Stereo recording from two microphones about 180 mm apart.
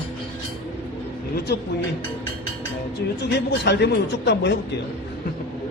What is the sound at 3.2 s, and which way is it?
Speech, 65° left (ahead or behind).